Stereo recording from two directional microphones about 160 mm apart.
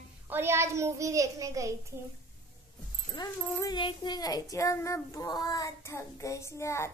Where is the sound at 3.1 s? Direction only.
20° left (ahead or behind).